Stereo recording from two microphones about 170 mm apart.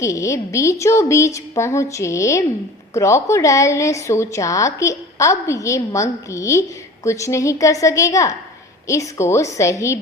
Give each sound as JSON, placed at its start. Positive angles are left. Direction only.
{"t": 0.0, "sound": "a woman's voice", "side_deg": 20}